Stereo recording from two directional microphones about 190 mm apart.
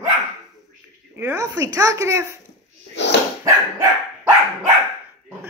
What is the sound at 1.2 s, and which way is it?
Speech, 15° right (ahead or behind).